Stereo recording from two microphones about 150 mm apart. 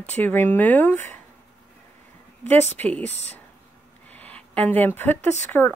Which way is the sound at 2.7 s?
10° left (ahead or behind).